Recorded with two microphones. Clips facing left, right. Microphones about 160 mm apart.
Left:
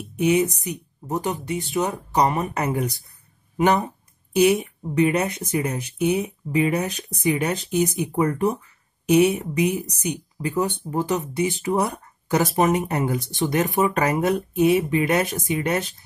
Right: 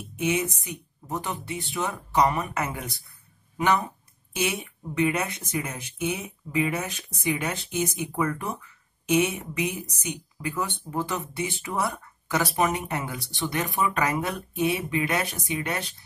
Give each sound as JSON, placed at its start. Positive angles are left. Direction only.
{"t": 0.3, "sound": "a woman's voice", "side_deg": 40}